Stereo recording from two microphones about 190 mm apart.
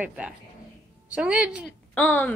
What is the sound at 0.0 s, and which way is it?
A woman's voice, 5° right (ahead or behind).